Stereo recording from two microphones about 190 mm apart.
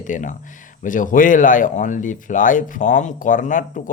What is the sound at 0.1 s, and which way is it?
Speech, 40° left (ahead or behind).